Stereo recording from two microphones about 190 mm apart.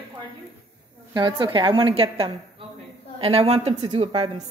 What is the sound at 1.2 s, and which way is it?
A woman's voice, 25° right (ahead or behind).